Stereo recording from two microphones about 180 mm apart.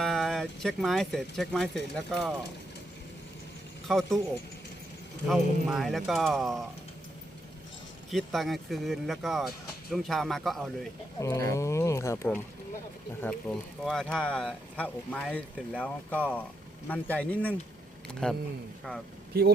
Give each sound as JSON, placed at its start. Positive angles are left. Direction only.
{"t": 0.0, "sound": "speech", "side_deg": 0}
{"t": 3.8, "sound": "speech", "side_deg": 0}
{"t": 5.3, "sound": "speech", "side_deg": 0}
{"t": 8.1, "sound": "speech", "side_deg": 0}
{"t": 11.2, "sound": "speech", "side_deg": 15}